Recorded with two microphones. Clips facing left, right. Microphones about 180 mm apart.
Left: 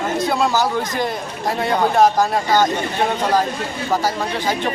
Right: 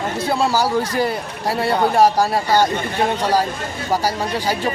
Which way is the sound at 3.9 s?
10° right (ahead or behind).